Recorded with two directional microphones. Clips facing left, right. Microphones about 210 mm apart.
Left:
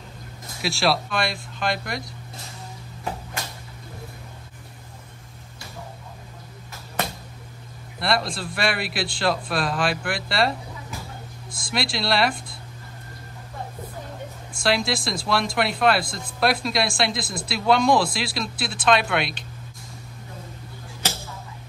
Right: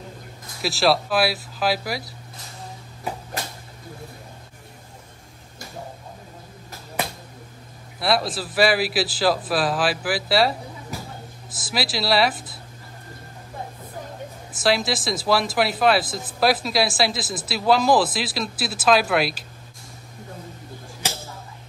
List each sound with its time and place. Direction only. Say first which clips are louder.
0.6 s speech: right 3 dB; centre (ahead or behind)
8.0 s speech: right 2 dB; centre (ahead or behind)
11.6 s speech: right 1 dB; 5° right (ahead or behind)
14.6 s speech: right 1 dB; centre (ahead or behind)